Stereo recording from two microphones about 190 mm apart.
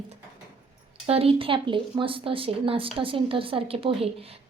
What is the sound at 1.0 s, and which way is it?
A woman's voice, 30° right (ahead or behind).